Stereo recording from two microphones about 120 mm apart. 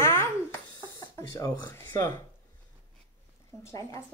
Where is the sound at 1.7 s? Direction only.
20° left (ahead or behind).